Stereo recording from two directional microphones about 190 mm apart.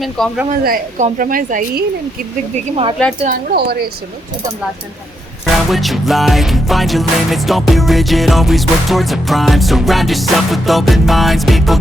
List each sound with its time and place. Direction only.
0.0 s music: centre (ahead or behind)
0.6 s a woman's voice: 45° right (ahead or behind)
3.2 s speech: 55° right (ahead or behind)
5.7 s music: centre (ahead or behind)